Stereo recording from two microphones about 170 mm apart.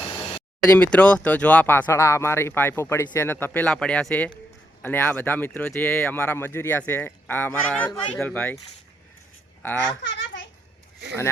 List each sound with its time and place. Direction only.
0.8 s speech: 5° left (ahead or behind)
10.0 s babbling: 90° left